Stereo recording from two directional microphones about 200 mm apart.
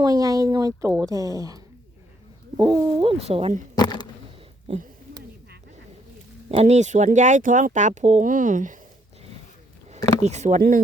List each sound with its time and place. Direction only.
0.0 s speech: 20° right (ahead or behind)
3.8 s a sound: 20° left (ahead or behind)
4.7 s speech: 30° right (ahead or behind)
6.5 s speech: 35° right (ahead or behind)
10.2 s speech: 35° right (ahead or behind)